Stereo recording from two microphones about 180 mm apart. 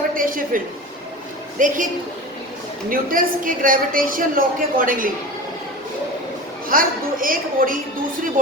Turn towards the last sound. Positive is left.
turn(degrees=-50)  # may be behind; listen again after turning